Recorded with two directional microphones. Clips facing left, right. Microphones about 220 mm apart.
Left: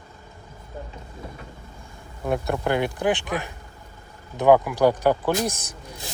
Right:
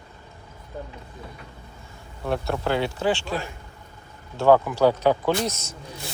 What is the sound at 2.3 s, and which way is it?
Speech, 10° left (ahead or behind).